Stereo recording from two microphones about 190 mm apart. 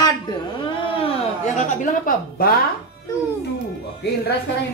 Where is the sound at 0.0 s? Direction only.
25° left (ahead or behind).